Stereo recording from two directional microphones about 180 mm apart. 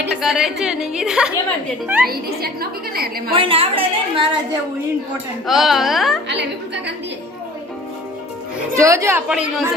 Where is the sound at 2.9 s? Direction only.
55° right (ahead or behind).